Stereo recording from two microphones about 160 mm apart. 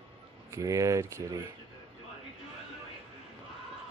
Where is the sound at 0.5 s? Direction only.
20° right (ahead or behind).